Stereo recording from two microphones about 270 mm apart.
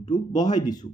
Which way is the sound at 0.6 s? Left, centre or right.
Centre.